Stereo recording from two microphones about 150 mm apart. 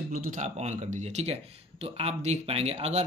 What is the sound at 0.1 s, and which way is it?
Speech, 60° right (ahead or behind).